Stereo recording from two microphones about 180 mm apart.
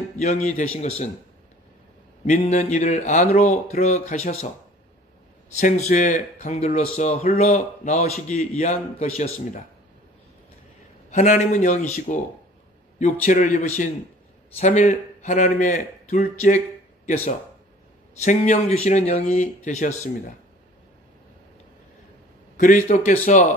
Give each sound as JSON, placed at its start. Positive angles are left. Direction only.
{"t": 0.2, "sound": "speech", "side_deg": 40}
{"t": 2.2, "sound": "speech", "side_deg": 40}
{"t": 5.6, "sound": "speech", "side_deg": 45}
{"t": 11.1, "sound": "a man's voice", "side_deg": 40}
{"t": 22.6, "sound": "a man's voice", "side_deg": 45}